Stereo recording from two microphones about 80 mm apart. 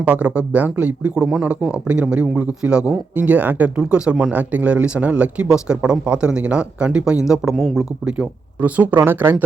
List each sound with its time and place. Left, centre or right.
0.0 s speech: centre
7.5 s speech: centre
8.0 s speech: centre